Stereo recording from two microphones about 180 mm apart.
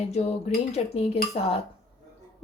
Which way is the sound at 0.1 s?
40° left (ahead or behind).